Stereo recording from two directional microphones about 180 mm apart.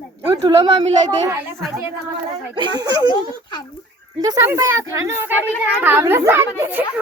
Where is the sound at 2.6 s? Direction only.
20° right (ahead or behind).